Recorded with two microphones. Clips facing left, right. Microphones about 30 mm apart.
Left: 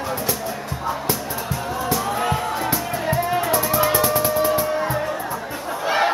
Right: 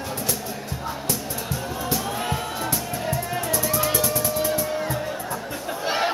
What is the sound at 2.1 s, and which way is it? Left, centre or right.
Music, left.